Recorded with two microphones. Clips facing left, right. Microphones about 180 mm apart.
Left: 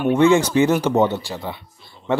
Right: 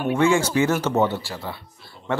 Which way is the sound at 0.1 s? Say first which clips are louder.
Left 4 dB; 20° left (ahead or behind).